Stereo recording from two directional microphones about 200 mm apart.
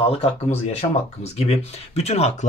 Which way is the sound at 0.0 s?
30° left (ahead or behind).